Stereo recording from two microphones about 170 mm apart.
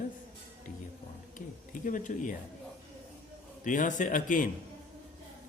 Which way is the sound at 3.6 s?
50° left (ahead or behind).